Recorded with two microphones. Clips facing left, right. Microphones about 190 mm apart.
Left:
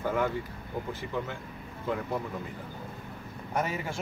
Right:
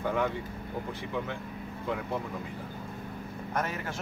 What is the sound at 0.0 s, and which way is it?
Vehicle, centre (ahead or behind).